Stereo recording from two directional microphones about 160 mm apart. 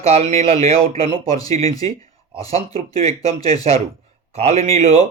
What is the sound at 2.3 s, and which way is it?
A man's voice, 40° right (ahead or behind).